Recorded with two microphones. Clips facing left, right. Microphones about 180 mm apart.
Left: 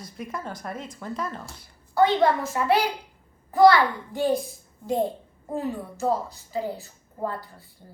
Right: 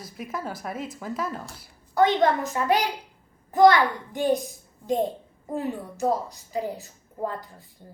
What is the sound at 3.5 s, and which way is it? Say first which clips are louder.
Speech: even; 20° right (ahead or behind).